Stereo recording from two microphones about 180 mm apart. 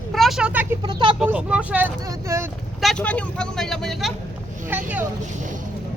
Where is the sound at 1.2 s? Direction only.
5° right (ahead or behind).